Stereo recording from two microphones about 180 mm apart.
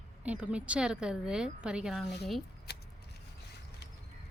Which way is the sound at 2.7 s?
65° left (ahead or behind).